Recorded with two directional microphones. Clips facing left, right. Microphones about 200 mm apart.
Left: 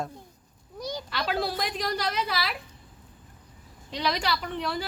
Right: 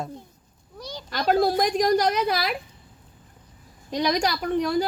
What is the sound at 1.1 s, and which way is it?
A woman's voice, 45° right (ahead or behind).